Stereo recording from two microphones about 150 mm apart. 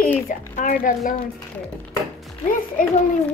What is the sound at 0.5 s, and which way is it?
Speech, 60° left (ahead or behind).